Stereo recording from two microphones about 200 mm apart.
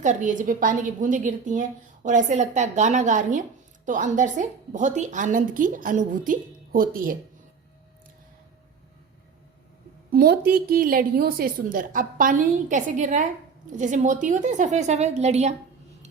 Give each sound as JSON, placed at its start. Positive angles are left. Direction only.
{"t": 0.0, "sound": "a woman's voice", "side_deg": -40}
{"t": 10.1, "sound": "a woman's voice", "side_deg": -50}